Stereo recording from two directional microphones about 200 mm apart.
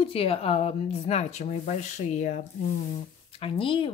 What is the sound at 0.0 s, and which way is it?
Speech, 30° left (ahead or behind).